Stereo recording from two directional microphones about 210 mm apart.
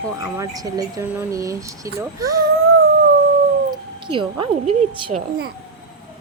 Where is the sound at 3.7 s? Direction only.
25° right (ahead or behind).